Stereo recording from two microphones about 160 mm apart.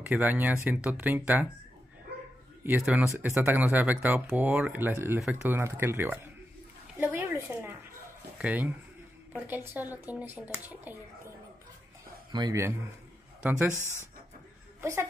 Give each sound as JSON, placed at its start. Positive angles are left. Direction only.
{"t": 0.0, "sound": "speech", "side_deg": -10}
{"t": 2.6, "sound": "speech", "side_deg": -10}
{"t": 12.3, "sound": "speech", "side_deg": -25}
{"t": 13.4, "sound": "speech", "side_deg": -10}
{"t": 13.7, "sound": "speech", "side_deg": 15}
{"t": 14.8, "sound": "a woman's voice", "side_deg": -15}